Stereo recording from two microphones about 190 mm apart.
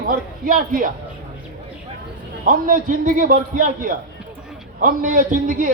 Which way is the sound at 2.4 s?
45° right (ahead or behind).